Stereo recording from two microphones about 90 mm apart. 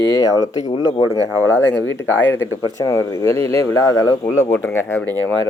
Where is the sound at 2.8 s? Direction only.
35° left (ahead or behind).